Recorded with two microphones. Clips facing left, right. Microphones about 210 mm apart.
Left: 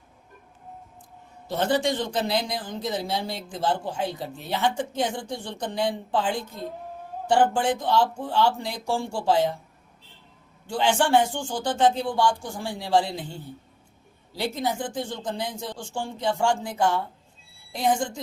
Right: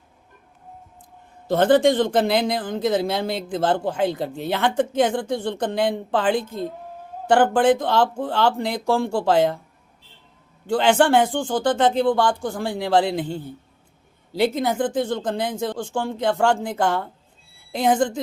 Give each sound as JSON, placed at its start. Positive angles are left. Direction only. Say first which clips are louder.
{"t": 1.5, "sound": "a man's voice", "louder": "right 8 dB", "side_deg": -55}
{"t": 3.2, "sound": "speech", "louder": "right 7 dB", "side_deg": -90}
{"t": 7.3, "sound": "speech", "louder": "right 5 dB", "side_deg": -75}
{"t": 10.7, "sound": "a man's voice", "louder": "right 6 dB", "side_deg": -90}
{"t": 10.9, "sound": "speech", "louder": "right 4 dB", "side_deg": -55}
{"t": 14.4, "sound": "speech", "louder": "right 7 dB", "side_deg": -55}